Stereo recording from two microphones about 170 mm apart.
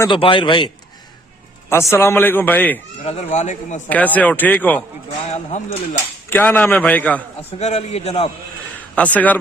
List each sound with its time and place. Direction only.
0.1 s a man's voice: 30° left (ahead or behind)
1.7 s a man's voice: 15° left (ahead or behind)
3.0 s a man's voice: 40° left (ahead or behind)
3.8 s a man's voice: 10° left (ahead or behind)
5.3 s a man's voice: 45° left (ahead or behind)
6.3 s a man's voice: 10° left (ahead or behind)
7.6 s a man's voice: 40° left (ahead or behind)
9.0 s a man's voice: 10° left (ahead or behind)